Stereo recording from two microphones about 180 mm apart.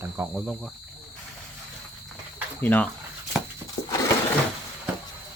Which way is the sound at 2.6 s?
10° left (ahead or behind).